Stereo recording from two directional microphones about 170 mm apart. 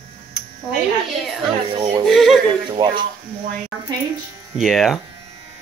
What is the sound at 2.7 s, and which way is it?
Speech, 25° right (ahead or behind).